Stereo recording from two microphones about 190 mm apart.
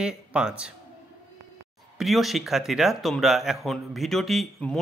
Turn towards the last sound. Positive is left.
turn(degrees=0)  # may be behind; listen again after turning